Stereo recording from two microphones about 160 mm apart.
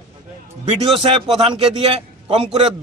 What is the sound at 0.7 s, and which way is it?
A man's voice, 35° right (ahead or behind).